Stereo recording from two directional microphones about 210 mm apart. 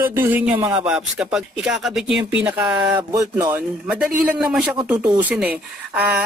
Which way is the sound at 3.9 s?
5° right (ahead or behind).